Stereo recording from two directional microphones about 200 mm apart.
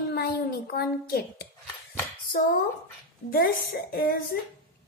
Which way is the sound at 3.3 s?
50° left (ahead or behind).